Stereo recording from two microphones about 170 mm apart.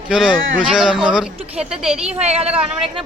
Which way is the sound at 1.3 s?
35° right (ahead or behind).